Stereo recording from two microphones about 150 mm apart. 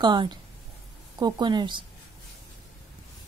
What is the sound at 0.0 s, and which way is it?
A woman's voice, 30° right (ahead or behind).